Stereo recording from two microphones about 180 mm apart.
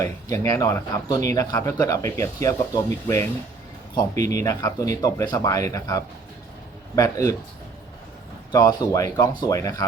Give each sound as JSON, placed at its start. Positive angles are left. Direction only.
{"t": 0.0, "sound": "speech", "side_deg": 20}
{"t": 8.5, "sound": "speech", "side_deg": 20}